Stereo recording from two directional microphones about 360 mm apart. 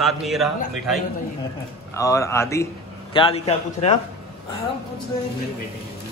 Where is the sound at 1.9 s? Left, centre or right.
Centre.